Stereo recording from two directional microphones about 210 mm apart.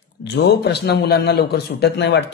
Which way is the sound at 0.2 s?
50° left (ahead or behind).